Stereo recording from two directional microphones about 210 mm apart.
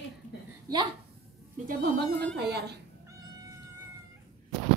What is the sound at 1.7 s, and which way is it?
Speech, 50° right (ahead or behind).